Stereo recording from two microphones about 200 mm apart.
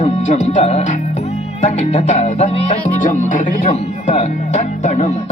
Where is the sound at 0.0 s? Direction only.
35° left (ahead or behind).